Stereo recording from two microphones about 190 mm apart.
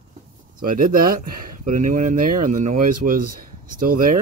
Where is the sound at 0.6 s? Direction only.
45° right (ahead or behind).